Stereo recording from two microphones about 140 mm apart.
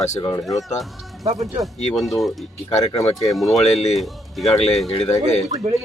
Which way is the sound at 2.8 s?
25° left (ahead or behind).